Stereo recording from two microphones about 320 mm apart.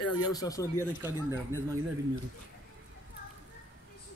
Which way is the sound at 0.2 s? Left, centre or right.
Centre.